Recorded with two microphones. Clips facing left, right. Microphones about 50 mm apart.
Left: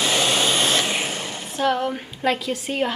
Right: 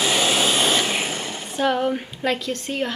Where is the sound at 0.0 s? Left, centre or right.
Centre.